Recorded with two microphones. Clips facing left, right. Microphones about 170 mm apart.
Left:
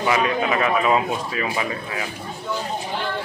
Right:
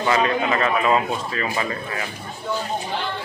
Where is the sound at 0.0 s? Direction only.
10° left (ahead or behind).